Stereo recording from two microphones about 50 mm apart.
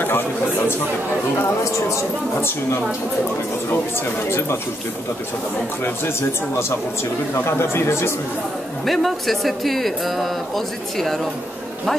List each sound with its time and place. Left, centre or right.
0.0 s a sound: left
4.3 s speech: left
5.9 s speech: left
8.8 s speech: centre